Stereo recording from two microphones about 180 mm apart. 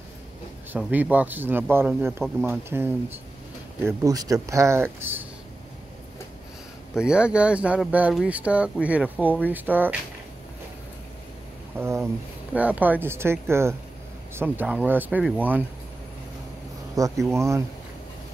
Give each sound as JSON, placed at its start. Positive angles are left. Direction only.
{"t": 0.7, "sound": "speech", "side_deg": -5}
{"t": 7.0, "sound": "speech", "side_deg": -5}
{"t": 11.7, "sound": "speech", "side_deg": -15}
{"t": 17.0, "sound": "speech", "side_deg": -20}